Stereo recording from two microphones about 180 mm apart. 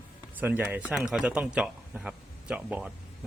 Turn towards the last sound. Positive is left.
turn(degrees=-5)  # may be behind; listen again after turning